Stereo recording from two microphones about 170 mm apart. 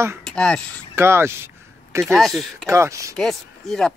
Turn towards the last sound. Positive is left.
turn(degrees=5)  # may be behind; listen again after turning